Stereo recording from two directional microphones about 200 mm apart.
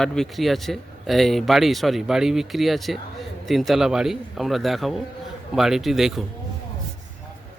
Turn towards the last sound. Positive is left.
turn(degrees=0)  # may be behind; listen again after turning